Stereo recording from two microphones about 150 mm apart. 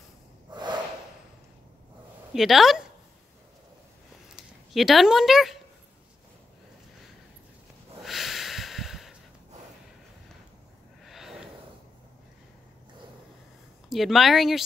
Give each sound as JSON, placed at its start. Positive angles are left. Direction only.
{"t": 0.5, "sound": "snort", "side_deg": -30}
{"t": 2.3, "sound": "speech", "side_deg": 0}
{"t": 4.4, "sound": "speech", "side_deg": 0}
{"t": 8.0, "sound": "snort", "side_deg": 0}
{"t": 11.1, "sound": "snort", "side_deg": 0}
{"t": 13.8, "sound": "speech", "side_deg": 0}